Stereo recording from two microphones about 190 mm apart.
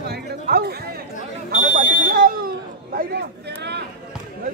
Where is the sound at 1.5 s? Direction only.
45° right (ahead or behind).